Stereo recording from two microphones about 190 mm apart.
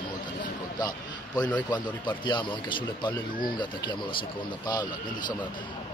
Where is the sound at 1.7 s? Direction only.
25° left (ahead or behind).